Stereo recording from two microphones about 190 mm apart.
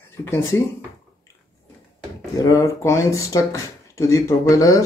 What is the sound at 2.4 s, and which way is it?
Speech, 15° left (ahead or behind).